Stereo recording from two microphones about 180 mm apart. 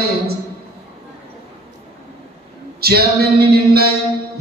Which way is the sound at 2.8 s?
60° right (ahead or behind).